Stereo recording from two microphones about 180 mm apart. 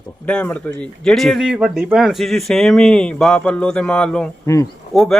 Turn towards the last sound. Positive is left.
turn(degrees=0)  # may be behind; listen again after turning